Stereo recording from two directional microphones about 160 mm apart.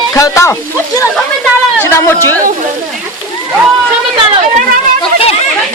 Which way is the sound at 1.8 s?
15° left (ahead or behind).